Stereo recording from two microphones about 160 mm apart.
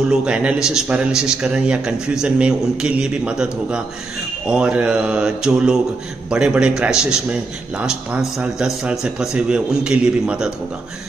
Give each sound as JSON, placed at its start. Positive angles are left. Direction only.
{"t": 0.1, "sound": "speech", "side_deg": -5}